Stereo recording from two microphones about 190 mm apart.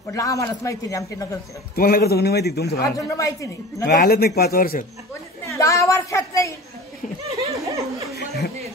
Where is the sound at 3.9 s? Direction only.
55° left (ahead or behind).